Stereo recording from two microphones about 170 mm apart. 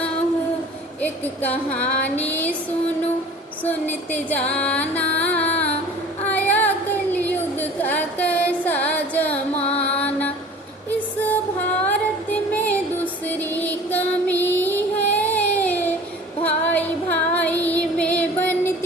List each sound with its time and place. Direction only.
1.0 s music: 10° left (ahead or behind)
3.6 s music: 10° left (ahead or behind)
6.2 s a sound: 10° left (ahead or behind)
9.6 s carnatic music: 40° left (ahead or behind)
9.9 s mantra: 10° left (ahead or behind)
10.9 s music: 10° left (ahead or behind)